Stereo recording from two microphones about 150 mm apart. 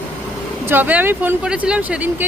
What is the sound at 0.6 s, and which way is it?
Speech, 15° right (ahead or behind).